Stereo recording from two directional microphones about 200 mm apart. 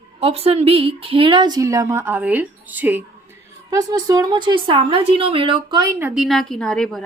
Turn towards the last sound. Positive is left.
turn(degrees=0)  # may be behind; listen again after turning